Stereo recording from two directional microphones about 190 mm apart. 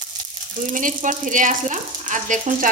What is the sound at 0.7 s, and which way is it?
Frying, 45° right (ahead or behind).